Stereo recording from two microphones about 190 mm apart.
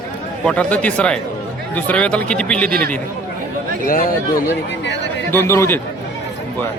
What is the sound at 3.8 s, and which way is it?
Speech, 50° left (ahead or behind).